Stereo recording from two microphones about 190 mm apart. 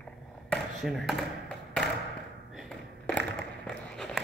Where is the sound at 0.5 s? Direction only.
Centre (ahead or behind).